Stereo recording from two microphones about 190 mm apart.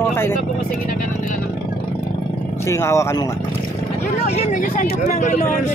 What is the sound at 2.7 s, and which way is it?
Speech, 15° left (ahead or behind).